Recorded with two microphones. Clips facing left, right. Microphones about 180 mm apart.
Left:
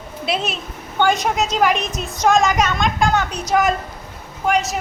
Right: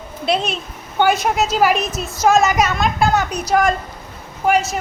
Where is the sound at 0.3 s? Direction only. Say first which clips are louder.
Right 3 dB; centre (ahead or behind).